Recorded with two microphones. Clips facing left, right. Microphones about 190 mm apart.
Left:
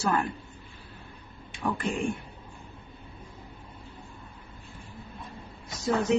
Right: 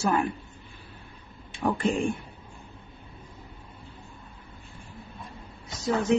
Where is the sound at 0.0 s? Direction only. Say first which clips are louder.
Right 2 dB; 15° right (ahead or behind).